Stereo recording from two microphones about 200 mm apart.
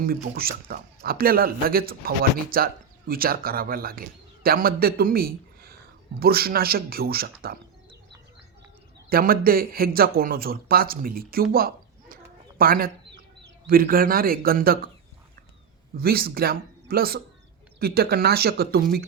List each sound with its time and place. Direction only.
0.0 s a man's voice: 50° right (ahead or behind)
9.0 s speech: 45° right (ahead or behind)
16.0 s speech: 50° right (ahead or behind)